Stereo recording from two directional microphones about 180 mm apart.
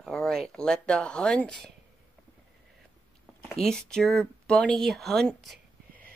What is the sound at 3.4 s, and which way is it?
Speech, 5° left (ahead or behind).